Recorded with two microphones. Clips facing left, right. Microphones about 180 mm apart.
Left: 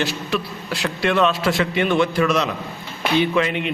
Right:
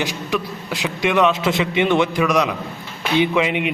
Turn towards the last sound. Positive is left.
turn(degrees=-15)  # may be behind; listen again after turning